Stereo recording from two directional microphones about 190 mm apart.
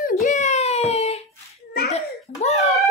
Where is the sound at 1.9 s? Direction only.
35° left (ahead or behind).